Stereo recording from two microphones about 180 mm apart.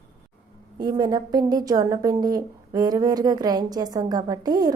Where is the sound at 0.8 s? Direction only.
25° right (ahead or behind).